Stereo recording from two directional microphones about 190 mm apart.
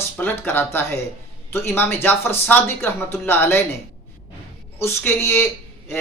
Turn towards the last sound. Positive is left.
turn(degrees=10)  # may be behind; listen again after turning